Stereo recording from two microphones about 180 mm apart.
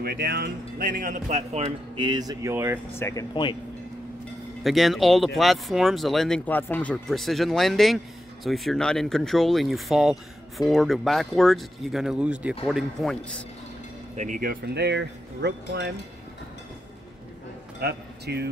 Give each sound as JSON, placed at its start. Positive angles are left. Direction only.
{"t": 0.0, "sound": "speech", "side_deg": -60}
{"t": 2.0, "sound": "speech", "side_deg": -25}
{"t": 3.0, "sound": "speech", "side_deg": 15}
{"t": 4.6, "sound": "speech", "side_deg": 0}
{"t": 14.1, "sound": "speech", "side_deg": -45}
{"t": 17.7, "sound": "speech", "side_deg": -60}